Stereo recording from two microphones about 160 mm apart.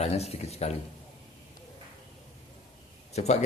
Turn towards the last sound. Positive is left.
turn(degrees=45)  # may be behind; listen again after turning